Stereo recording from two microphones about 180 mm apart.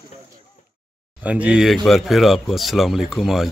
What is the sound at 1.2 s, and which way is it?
Speech, 5° right (ahead or behind).